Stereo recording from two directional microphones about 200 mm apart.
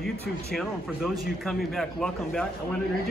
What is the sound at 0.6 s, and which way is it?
A man's voice, centre (ahead or behind).